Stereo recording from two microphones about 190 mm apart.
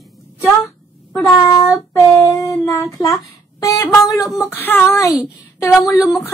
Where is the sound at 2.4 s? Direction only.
15° left (ahead or behind).